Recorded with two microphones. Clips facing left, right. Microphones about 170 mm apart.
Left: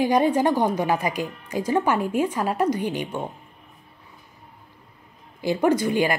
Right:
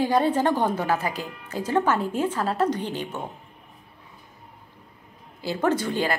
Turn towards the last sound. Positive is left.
turn(degrees=15)  # may be behind; listen again after turning